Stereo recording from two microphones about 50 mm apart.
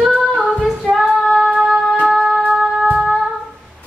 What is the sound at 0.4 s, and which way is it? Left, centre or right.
Female singing, centre.